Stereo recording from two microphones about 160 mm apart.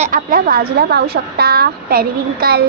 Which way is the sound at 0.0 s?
60° right (ahead or behind).